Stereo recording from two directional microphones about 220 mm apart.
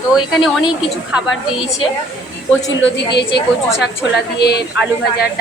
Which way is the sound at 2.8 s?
50° left (ahead or behind).